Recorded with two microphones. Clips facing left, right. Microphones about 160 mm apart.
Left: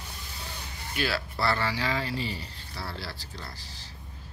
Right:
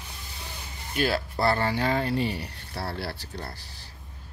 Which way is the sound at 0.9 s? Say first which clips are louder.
Right 4 dB; 45° right (ahead or behind).